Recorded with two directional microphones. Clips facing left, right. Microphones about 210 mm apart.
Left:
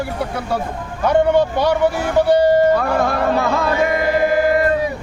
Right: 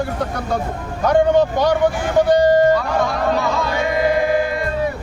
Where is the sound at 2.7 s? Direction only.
55° left (ahead or behind).